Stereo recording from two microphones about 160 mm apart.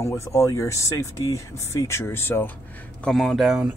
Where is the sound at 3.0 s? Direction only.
Centre (ahead or behind).